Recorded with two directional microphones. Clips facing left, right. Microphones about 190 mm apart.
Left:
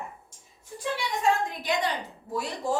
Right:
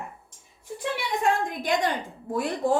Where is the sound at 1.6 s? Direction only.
50° right (ahead or behind).